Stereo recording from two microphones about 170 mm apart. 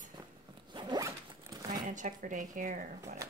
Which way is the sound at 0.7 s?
25° right (ahead or behind).